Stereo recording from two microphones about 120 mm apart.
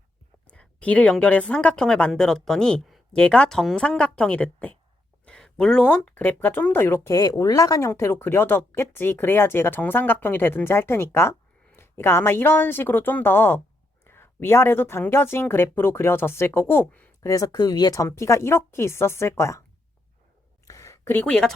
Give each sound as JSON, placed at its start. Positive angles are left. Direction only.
{"t": 0.4, "sound": "a woman's voice", "side_deg": 10}
{"t": 17.2, "sound": "a woman's voice", "side_deg": 30}
{"t": 20.7, "sound": "a sound", "side_deg": 25}
{"t": 21.1, "sound": "speech", "side_deg": 10}